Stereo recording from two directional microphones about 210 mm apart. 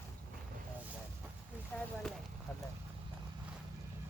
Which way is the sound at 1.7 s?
5° left (ahead or behind).